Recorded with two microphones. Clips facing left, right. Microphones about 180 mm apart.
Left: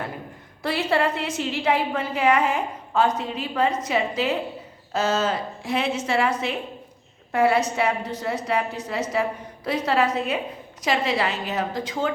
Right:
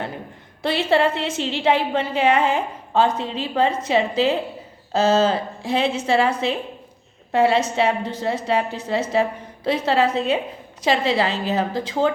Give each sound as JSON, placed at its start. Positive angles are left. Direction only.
{"t": 0.6, "sound": "a woman's voice", "side_deg": -25}
{"t": 7.3, "sound": "a woman's voice", "side_deg": -25}